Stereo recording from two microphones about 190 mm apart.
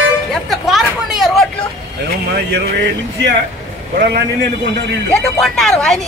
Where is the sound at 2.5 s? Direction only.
60° right (ahead or behind).